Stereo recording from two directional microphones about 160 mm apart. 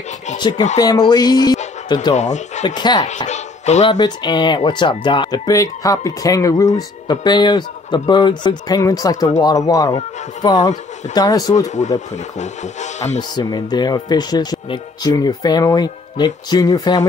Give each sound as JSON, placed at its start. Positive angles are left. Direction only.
{"t": 0.4, "sound": "speech", "side_deg": 25}
{"t": 2.1, "sound": "speech", "side_deg": 45}
{"t": 2.6, "sound": "speech", "side_deg": 25}
{"t": 3.3, "sound": "a sound", "side_deg": 45}
{"t": 3.9, "sound": "speech", "side_deg": 25}
{"t": 12.1, "sound": "speech", "side_deg": 45}
{"t": 13.2, "sound": "speech", "side_deg": 25}